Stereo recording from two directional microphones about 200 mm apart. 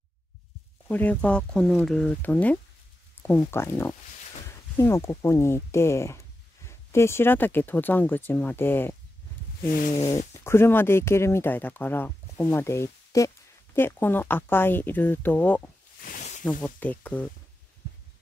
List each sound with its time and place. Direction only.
0.8 s speech: 10° left (ahead or behind)
9.7 s cat: 40° left (ahead or behind)
10.1 s speech: 10° left (ahead or behind)
16.0 s a sound: 40° left (ahead or behind)
16.4 s speech: 10° left (ahead or behind)